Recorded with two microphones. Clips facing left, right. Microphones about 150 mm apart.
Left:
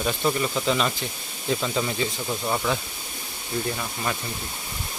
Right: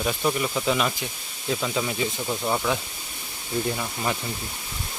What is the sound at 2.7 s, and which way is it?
Speech, 15° right (ahead or behind).